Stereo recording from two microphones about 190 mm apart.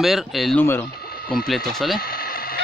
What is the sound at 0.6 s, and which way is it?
Speech, 10° left (ahead or behind).